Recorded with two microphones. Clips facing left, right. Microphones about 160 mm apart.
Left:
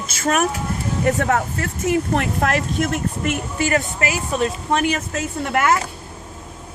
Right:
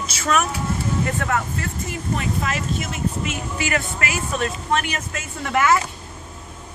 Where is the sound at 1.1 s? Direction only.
65° left (ahead or behind).